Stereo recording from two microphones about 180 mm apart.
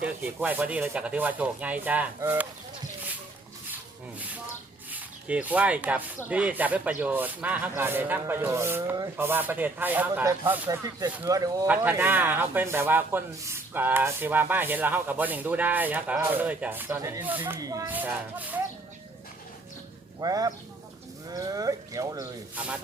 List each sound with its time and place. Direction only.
0.4 s speech: 10° right (ahead or behind)
4.9 s speech: 10° right (ahead or behind)
20.2 s speech: 20° right (ahead or behind)
22.5 s speech: 5° right (ahead or behind)